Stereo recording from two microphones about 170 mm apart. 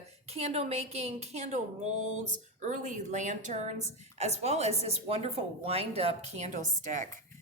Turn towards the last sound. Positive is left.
turn(degrees=-45)  # may be behind; listen again after turning